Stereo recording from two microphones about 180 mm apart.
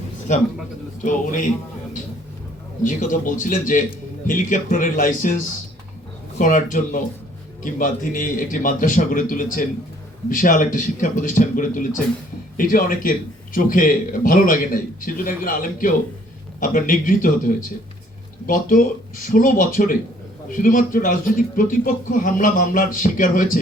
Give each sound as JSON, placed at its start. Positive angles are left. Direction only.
{"t": 0.3, "sound": "a man's voice", "side_deg": 40}
{"t": 2.8, "sound": "a man's voice", "side_deg": 45}
{"t": 6.4, "sound": "a man's voice", "side_deg": 45}